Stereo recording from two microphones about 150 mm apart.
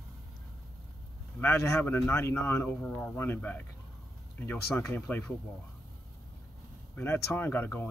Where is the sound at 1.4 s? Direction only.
15° left (ahead or behind).